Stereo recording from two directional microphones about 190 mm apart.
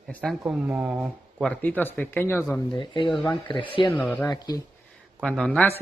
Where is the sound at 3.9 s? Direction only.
10° left (ahead or behind).